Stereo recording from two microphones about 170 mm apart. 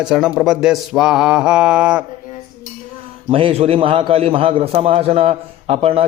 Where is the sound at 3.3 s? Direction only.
35° right (ahead or behind).